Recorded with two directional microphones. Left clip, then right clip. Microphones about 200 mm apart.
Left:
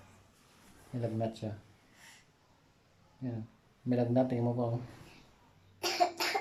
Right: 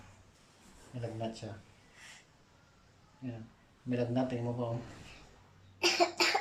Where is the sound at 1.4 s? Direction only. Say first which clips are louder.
Left 4 dB; 20° left (ahead or behind).